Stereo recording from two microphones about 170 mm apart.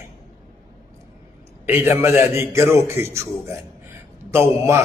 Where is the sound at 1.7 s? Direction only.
15° right (ahead or behind).